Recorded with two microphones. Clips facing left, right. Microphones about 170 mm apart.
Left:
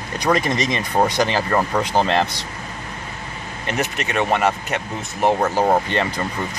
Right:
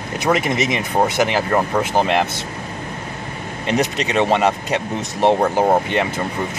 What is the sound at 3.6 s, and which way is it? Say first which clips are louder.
Speech: right 5 dB; 20° right (ahead or behind).